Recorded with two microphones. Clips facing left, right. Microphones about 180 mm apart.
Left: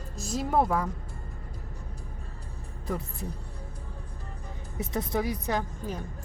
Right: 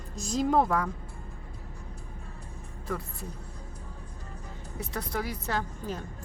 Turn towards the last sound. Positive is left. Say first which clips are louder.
# left 1 dB
turn(degrees=15)  # may be behind; listen again after turning